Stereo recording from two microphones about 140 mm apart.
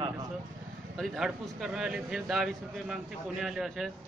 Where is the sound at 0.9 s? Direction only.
Centre (ahead or behind).